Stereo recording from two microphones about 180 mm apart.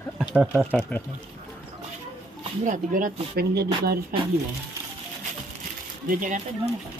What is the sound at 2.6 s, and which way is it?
Speech, 45° right (ahead or behind).